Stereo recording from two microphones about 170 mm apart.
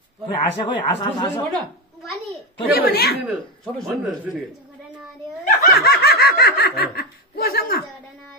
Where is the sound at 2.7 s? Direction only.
60° left (ahead or behind).